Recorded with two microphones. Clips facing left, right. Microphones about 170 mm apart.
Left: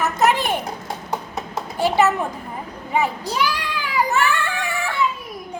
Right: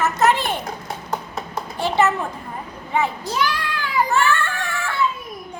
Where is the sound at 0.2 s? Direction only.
15° left (ahead or behind).